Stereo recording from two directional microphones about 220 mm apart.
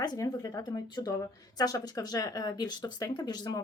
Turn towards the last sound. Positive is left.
turn(degrees=20)  # may be behind; listen again after turning